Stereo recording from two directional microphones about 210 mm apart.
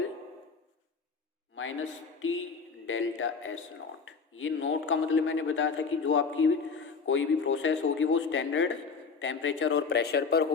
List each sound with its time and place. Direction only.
1.5 s a man's voice: 70° left (ahead or behind); by 10.5 s 50° left (ahead or behind)